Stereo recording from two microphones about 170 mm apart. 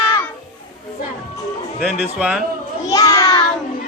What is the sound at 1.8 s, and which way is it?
Speech, centre (ahead or behind).